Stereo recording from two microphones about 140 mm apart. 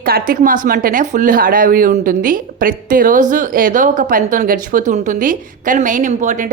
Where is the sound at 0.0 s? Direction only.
90° right.